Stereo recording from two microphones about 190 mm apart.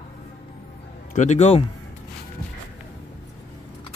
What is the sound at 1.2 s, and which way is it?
Speech, 35° left (ahead or behind).